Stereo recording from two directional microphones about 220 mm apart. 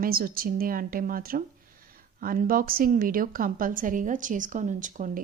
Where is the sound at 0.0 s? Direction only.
40° right (ahead or behind).